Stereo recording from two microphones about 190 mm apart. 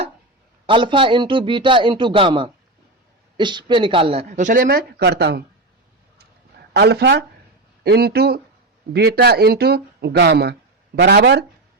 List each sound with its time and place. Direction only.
0.7 s a man's voice: 25° right (ahead or behind); by 5.4 s 60° right (ahead or behind)
6.7 s speech: 60° right (ahead or behind)